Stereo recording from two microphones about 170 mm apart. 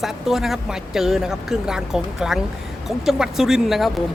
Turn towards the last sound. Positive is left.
turn(degrees=0)  # may be behind; listen again after turning